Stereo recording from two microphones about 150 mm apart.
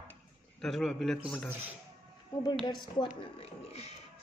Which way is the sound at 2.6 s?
30° left (ahead or behind).